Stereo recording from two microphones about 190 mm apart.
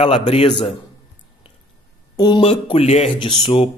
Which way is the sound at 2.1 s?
20° left (ahead or behind).